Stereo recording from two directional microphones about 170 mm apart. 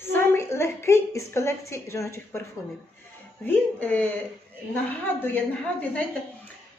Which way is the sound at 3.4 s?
10° left (ahead or behind).